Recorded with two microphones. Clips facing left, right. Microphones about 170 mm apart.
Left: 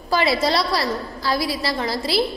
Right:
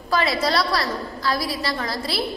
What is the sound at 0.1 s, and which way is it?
A woman's voice, 30° left (ahead or behind).